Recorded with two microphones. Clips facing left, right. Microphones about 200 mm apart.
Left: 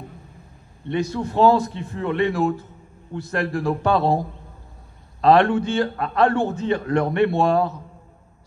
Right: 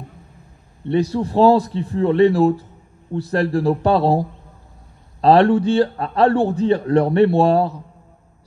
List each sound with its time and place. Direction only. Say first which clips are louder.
0.8 s a man's voice: right 5 dB; 35° right (ahead or behind)